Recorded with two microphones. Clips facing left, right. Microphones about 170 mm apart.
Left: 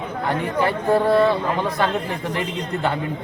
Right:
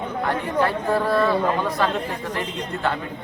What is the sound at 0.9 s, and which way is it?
Speech, 20° left (ahead or behind).